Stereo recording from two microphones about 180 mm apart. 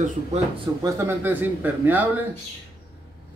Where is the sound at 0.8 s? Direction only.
15° right (ahead or behind).